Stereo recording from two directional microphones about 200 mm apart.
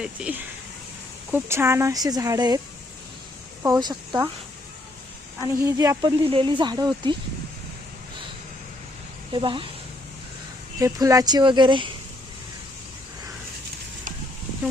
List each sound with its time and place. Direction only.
0.0 s speech: 5° right (ahead or behind)
3.6 s speech: 20° right (ahead or behind)
5.4 s speech: 15° right (ahead or behind)
9.3 s speech: 25° right (ahead or behind)
10.8 s speech: 15° right (ahead or behind)